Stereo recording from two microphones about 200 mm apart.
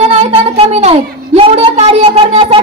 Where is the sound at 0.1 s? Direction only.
30° right (ahead or behind).